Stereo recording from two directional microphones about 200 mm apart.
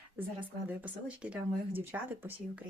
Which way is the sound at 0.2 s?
10° right (ahead or behind).